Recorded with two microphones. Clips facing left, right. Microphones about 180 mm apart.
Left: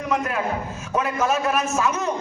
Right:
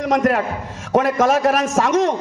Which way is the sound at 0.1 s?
85° right.